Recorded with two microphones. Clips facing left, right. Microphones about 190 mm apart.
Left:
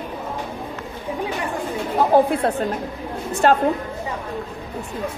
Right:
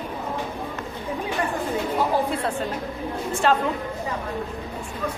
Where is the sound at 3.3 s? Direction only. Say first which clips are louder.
Left 4 dB; 40° left (ahead or behind).